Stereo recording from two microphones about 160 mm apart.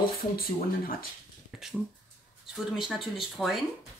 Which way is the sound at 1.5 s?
5° right (ahead or behind).